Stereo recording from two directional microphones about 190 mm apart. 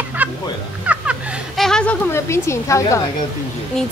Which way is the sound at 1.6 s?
5° left (ahead or behind).